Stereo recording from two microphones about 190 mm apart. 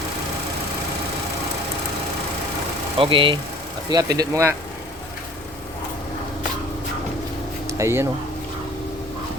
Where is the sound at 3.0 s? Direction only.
25° right (ahead or behind).